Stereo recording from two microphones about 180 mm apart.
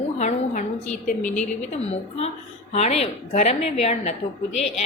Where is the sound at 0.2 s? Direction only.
40° left (ahead or behind).